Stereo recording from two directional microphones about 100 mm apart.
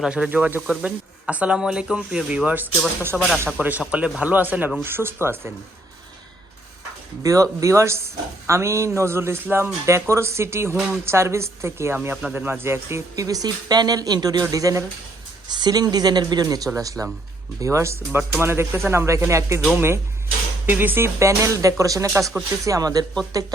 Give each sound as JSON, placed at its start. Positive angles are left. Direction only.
{"t": 0.0, "sound": "speech", "side_deg": -10}
{"t": 7.2, "sound": "speech", "side_deg": -35}
{"t": 15.4, "sound": "speech", "side_deg": -45}
{"t": 22.2, "sound": "speech", "side_deg": 0}
{"t": 22.6, "sound": "speech", "side_deg": -35}